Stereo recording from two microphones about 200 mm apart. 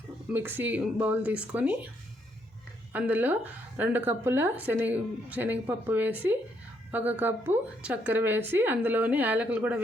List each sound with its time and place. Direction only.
0.3 s a woman's voice: 10° right (ahead or behind)
2.9 s a woman's voice: 10° right (ahead or behind)